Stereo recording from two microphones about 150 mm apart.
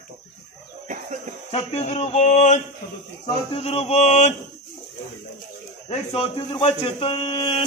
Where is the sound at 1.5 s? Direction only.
45° left (ahead or behind).